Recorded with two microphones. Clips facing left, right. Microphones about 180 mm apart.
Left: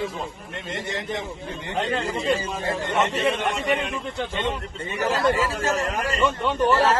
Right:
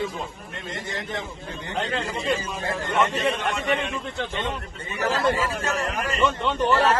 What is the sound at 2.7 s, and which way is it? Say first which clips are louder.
Speech: even; 25° left (ahead or behind).